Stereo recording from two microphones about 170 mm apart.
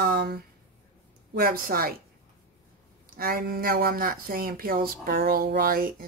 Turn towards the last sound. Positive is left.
turn(degrees=-55)  # may be behind; listen again after turning